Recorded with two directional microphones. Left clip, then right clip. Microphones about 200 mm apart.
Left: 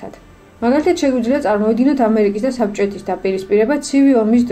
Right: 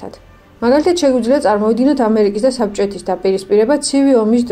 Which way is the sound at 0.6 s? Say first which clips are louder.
Right 3 dB; 25° right (ahead or behind).